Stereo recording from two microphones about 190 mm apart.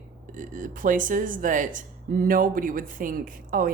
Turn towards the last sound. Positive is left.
turn(degrees=-45)  # may be behind; listen again after turning